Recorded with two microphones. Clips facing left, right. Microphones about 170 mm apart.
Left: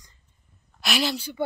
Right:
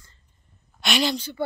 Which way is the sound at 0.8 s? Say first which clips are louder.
Right 2 dB; centre (ahead or behind).